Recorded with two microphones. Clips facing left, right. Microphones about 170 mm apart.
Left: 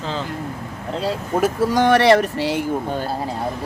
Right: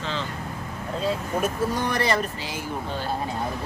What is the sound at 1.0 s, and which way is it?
Speech, 90° left.